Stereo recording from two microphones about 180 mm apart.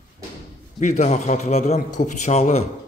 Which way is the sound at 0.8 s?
40° left (ahead or behind).